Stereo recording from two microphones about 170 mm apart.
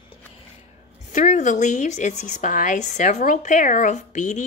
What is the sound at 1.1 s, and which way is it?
Speech, 45° left (ahead or behind).